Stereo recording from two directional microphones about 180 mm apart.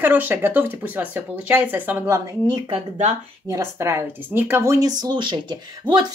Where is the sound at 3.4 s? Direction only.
15° right (ahead or behind).